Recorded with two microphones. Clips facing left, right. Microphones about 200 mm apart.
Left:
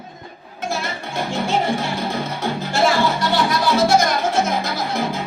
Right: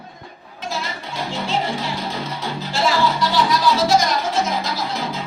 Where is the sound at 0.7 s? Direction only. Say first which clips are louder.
Left 3 dB; 50° left (ahead or behind).